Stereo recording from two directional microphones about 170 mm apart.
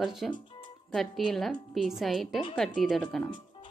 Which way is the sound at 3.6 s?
30° left (ahead or behind).